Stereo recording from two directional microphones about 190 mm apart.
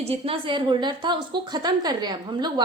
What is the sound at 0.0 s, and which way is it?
A woman's voice, 30° right (ahead or behind).